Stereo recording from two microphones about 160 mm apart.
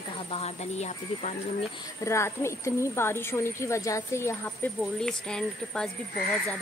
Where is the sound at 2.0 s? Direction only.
15° left (ahead or behind).